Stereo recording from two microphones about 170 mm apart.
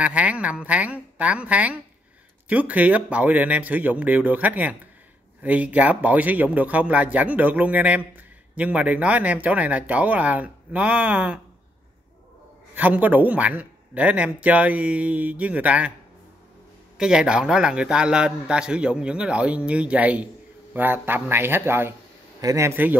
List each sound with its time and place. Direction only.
0.0 s speech: 10° right (ahead or behind)
12.7 s speech: 10° right (ahead or behind)
17.0 s a man's voice: 5° right (ahead or behind)